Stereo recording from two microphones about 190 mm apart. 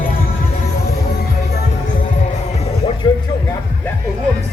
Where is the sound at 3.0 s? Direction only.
20° left (ahead or behind).